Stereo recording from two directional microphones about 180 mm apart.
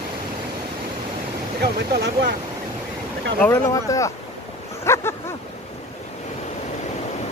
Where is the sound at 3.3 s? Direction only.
15° left (ahead or behind).